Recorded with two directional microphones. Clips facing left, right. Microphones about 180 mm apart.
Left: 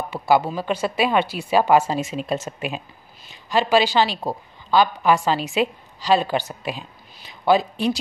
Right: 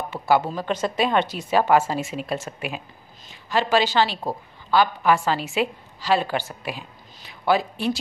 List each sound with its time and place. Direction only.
0.1 s a woman's voice: 15° left (ahead or behind)